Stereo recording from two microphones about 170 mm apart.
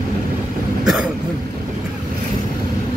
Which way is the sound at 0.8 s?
5° right (ahead or behind).